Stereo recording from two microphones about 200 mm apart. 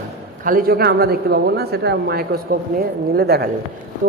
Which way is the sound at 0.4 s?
45° right (ahead or behind).